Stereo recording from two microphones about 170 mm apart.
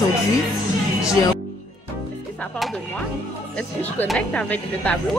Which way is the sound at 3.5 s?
10° left (ahead or behind).